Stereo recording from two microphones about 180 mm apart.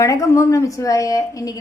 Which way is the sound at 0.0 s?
15° left (ahead or behind).